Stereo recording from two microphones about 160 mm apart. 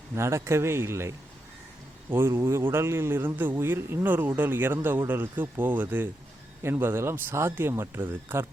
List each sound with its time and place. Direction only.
0.1 s a man's voice: 15° right (ahead or behind)